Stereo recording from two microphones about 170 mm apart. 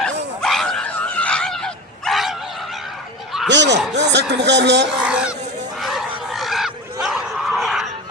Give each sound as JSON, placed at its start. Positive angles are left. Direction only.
{"t": 0.0, "sound": "a sound", "side_deg": 0}
{"t": 3.5, "sound": "speech", "side_deg": -90}
{"t": 4.9, "sound": "honk", "side_deg": -5}
{"t": 5.8, "sound": "goose", "side_deg": 0}